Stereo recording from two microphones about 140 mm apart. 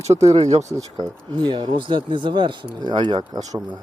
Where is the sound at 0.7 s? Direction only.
25° right (ahead or behind).